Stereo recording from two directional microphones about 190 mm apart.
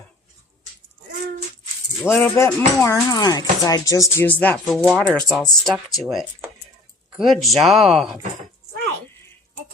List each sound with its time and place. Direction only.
2.0 s speech: 15° left (ahead or behind)